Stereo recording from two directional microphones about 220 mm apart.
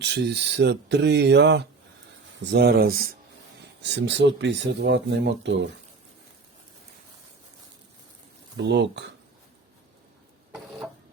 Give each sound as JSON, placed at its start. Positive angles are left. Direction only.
{"t": 0.0, "sound": "speech", "side_deg": -50}
{"t": 8.5, "sound": "speech", "side_deg": -50}